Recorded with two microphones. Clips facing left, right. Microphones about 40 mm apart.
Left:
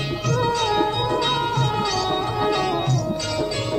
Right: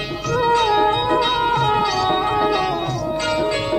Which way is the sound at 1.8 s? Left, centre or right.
Centre.